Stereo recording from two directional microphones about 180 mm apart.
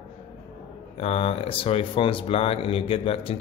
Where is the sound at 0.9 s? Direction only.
35° left (ahead or behind).